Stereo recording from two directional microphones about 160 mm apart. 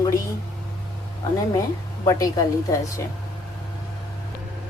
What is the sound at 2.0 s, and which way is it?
A woman's voice, 20° left (ahead or behind).